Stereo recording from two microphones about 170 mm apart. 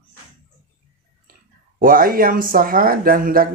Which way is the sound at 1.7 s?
55° right (ahead or behind).